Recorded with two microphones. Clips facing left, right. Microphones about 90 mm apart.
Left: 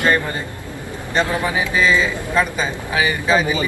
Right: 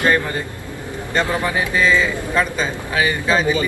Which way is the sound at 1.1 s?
15° left (ahead or behind).